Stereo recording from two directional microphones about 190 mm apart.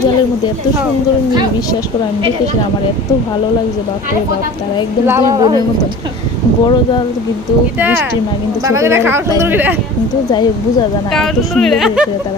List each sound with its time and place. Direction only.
5.0 s a woman's voice: 15° right (ahead or behind)
7.8 s a woman's voice: 10° right (ahead or behind)
11.1 s speech: centre (ahead or behind)